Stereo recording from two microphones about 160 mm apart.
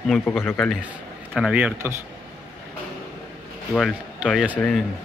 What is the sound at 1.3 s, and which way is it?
Speech, 5° right (ahead or behind).